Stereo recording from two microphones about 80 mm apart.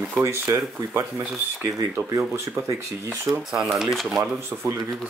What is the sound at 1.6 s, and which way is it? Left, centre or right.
Speech, right.